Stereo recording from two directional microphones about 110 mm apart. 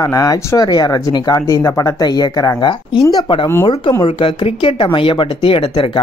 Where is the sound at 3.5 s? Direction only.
20° left (ahead or behind).